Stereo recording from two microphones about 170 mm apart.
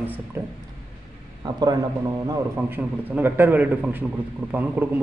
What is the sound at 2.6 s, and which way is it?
Speech, 10° right (ahead or behind).